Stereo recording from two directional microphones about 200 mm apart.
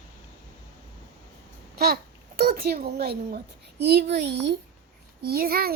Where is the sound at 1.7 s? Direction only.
50° right (ahead or behind).